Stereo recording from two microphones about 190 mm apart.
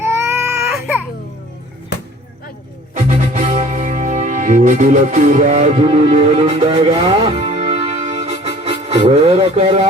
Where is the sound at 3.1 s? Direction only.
40° right (ahead or behind).